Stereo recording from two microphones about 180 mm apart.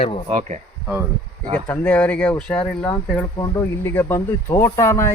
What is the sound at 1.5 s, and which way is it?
Speech, 5° left (ahead or behind).